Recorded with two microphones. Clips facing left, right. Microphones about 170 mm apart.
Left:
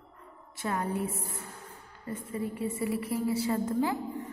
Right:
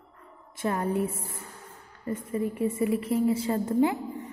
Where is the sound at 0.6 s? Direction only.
25° right (ahead or behind).